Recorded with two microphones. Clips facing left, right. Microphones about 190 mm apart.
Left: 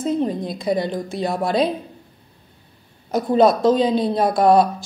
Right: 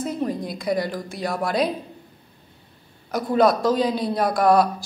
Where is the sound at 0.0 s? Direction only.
25° left (ahead or behind).